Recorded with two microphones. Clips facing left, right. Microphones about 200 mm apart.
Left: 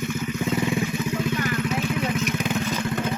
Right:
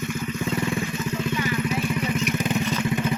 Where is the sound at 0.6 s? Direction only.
5° left (ahead or behind).